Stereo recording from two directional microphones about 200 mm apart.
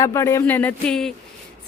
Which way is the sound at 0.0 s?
15° left (ahead or behind).